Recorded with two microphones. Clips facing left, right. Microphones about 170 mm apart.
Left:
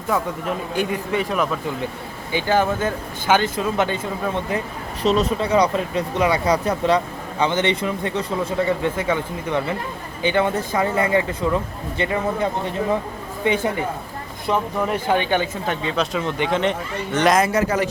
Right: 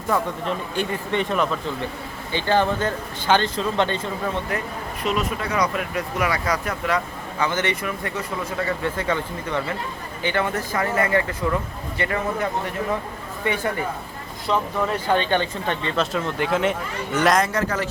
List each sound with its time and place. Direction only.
0.1 s speech: 10° left (ahead or behind)
5.0 s speech: 30° left (ahead or behind); by 17.8 s 10° left (ahead or behind)